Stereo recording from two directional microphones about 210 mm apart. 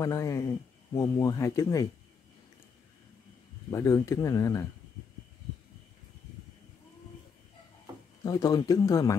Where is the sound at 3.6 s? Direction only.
15° left (ahead or behind).